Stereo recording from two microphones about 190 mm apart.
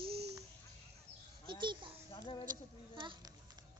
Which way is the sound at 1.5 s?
25° right (ahead or behind).